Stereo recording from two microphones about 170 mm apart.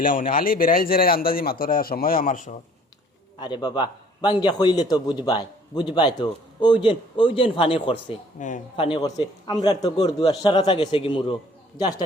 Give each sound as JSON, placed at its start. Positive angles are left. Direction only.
{"t": 0.0, "sound": "a man's voice", "side_deg": 55}
{"t": 3.4, "sound": "a man's voice", "side_deg": 25}
{"t": 8.4, "sound": "a man's voice", "side_deg": 50}
{"t": 8.7, "sound": "a man's voice", "side_deg": 30}